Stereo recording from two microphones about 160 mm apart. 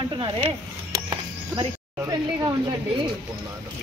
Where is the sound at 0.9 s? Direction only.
25° right (ahead or behind).